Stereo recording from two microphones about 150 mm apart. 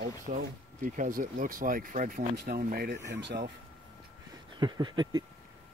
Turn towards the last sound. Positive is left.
turn(degrees=-30)  # may be behind; listen again after turning